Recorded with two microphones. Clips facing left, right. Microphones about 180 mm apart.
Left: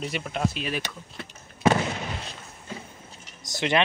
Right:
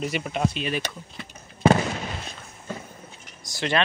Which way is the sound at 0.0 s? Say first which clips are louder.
Right 2 dB; centre (ahead or behind).